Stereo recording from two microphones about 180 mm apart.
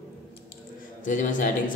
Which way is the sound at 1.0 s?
45° left (ahead or behind).